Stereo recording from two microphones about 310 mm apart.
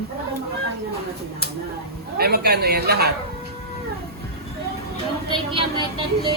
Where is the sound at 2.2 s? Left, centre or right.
Right.